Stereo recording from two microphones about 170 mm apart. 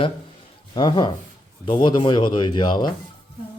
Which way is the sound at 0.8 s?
25° left (ahead or behind).